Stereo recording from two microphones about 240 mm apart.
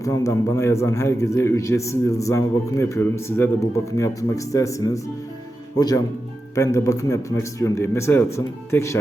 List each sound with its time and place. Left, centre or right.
0.0 s a man's voice: centre